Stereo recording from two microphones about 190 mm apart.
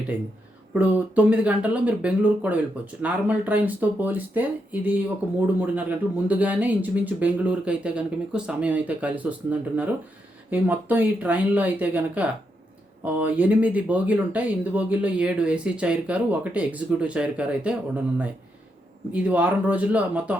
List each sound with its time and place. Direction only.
0.7 s speech: 10° right (ahead or behind)
6.2 s speech: 10° right (ahead or behind)